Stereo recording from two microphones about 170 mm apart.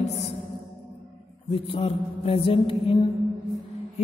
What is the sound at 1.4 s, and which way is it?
Mantra, 35° left (ahead or behind).